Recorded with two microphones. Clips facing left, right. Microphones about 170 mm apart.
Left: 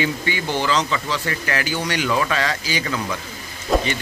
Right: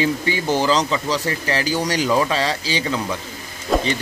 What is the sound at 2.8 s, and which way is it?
Speech, 20° right (ahead or behind).